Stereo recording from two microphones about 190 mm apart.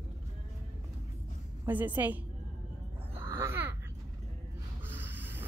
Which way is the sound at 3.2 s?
15° right (ahead or behind).